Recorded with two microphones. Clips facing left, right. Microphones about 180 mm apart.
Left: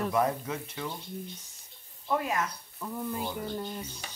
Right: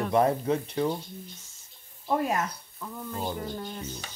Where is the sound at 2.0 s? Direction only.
40° right (ahead or behind).